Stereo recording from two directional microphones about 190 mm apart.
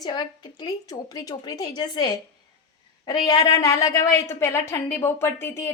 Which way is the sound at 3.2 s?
20° left (ahead or behind).